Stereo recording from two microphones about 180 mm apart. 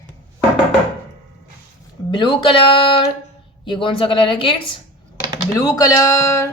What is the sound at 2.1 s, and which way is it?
Speech, 25° left (ahead or behind).